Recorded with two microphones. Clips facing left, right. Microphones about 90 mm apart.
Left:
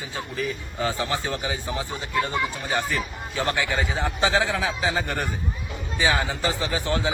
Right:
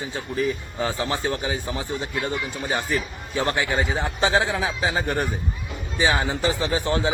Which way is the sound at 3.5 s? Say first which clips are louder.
Right 2 dB; 20° right (ahead or behind).